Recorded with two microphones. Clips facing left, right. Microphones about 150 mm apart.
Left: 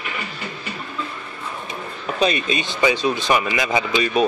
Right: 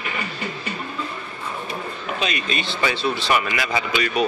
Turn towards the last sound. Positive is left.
turn(degrees=25)  # may be behind; listen again after turning